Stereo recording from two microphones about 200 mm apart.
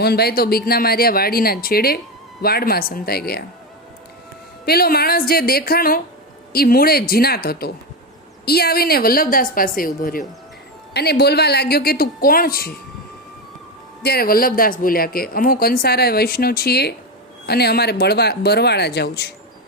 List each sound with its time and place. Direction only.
0.0 s speech: 50° left (ahead or behind)
4.6 s speech: 50° left (ahead or behind)
14.0 s speech: 50° left (ahead or behind)